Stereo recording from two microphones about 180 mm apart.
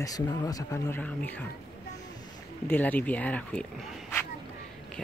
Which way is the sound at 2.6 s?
10° left (ahead or behind).